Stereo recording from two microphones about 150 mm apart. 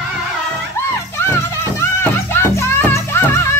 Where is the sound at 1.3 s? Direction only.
15° left (ahead or behind).